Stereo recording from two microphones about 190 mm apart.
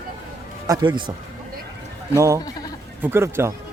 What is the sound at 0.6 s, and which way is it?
Speech, 20° right (ahead or behind).